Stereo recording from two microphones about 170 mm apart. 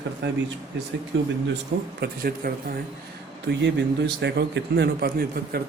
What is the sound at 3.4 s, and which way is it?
A man's voice, 90° right.